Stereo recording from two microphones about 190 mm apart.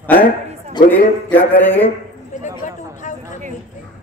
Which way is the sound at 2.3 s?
40° left (ahead or behind).